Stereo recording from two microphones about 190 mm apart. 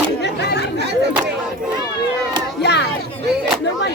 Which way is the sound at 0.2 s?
60° left (ahead or behind).